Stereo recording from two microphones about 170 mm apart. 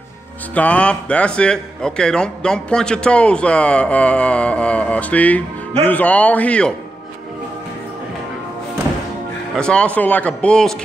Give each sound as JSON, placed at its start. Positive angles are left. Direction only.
{"t": 0.6, "sound": "a man's voice", "side_deg": 10}
{"t": 9.6, "sound": "a man's voice", "side_deg": 5}